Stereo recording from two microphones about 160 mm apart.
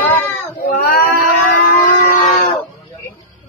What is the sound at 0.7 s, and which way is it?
Speech, 60° left (ahead or behind).